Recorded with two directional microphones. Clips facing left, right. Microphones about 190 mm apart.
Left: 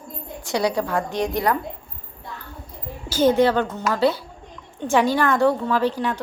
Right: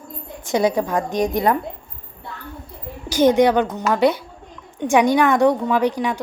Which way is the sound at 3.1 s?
15° right (ahead or behind).